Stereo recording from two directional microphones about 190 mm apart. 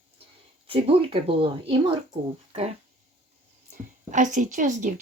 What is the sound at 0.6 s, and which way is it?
Speech, 30° right (ahead or behind).